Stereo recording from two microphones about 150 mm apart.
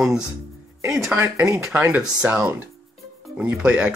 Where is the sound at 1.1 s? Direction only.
15° right (ahead or behind).